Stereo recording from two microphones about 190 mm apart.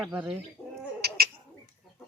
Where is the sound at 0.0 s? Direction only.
10° right (ahead or behind).